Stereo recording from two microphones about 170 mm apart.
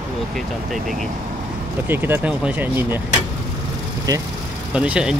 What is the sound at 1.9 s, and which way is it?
Speech, 10° right (ahead or behind).